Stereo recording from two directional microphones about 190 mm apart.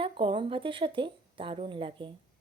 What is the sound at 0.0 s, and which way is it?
Speech, 25° right (ahead or behind).